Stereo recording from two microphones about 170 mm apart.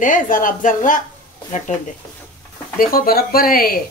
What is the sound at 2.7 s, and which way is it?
Speech, 60° left (ahead or behind).